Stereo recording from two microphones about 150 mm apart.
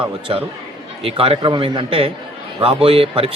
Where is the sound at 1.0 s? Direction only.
40° right (ahead or behind).